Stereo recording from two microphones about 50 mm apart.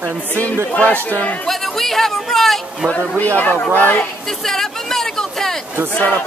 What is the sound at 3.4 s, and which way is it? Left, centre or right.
Speech, left.